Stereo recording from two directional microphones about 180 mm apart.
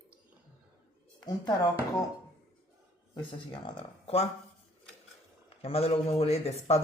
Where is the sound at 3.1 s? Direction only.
25° left (ahead or behind).